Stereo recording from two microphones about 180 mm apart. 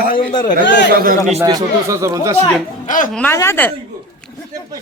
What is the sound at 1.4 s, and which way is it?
Speech, 20° right (ahead or behind).